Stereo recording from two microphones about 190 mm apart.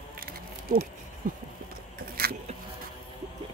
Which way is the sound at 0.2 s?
50° right (ahead or behind).